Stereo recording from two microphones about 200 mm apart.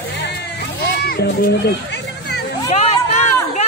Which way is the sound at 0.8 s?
50° left (ahead or behind).